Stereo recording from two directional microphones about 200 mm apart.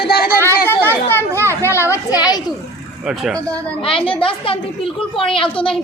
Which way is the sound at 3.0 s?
5° right (ahead or behind).